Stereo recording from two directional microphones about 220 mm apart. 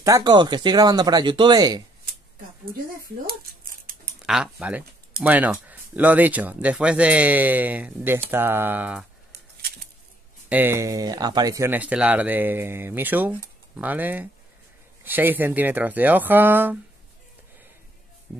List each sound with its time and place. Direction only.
0.0 s speech: 15° right (ahead or behind)
3.3 s dishes: 40° right (ahead or behind)
4.3 s speech: 5° right (ahead or behind)
10.5 s speech: 10° right (ahead or behind)